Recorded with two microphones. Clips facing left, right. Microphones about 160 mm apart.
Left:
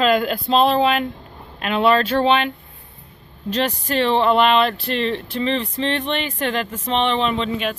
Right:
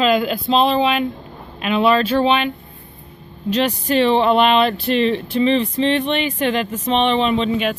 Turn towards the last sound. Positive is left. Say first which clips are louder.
# right 3 dB
turn(degrees=-15)  # may be behind; listen again after turning